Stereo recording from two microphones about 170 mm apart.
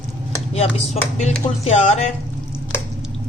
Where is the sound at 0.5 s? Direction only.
40° left (ahead or behind).